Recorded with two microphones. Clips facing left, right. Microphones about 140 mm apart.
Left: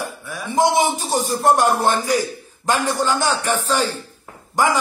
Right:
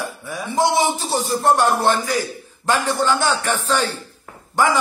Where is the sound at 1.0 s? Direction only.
15° left (ahead or behind).